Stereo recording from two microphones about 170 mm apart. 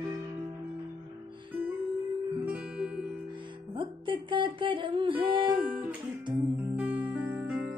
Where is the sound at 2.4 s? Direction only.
5° right (ahead or behind).